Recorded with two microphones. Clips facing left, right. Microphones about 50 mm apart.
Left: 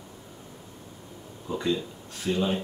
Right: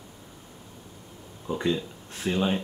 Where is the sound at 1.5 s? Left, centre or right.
Right.